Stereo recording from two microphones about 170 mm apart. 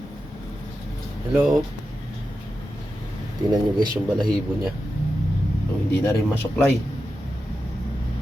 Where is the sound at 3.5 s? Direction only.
20° right (ahead or behind).